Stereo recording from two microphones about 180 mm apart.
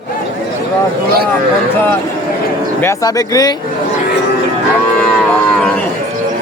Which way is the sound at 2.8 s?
20° left (ahead or behind).